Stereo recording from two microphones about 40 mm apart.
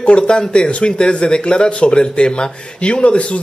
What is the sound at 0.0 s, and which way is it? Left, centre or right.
Speech, left.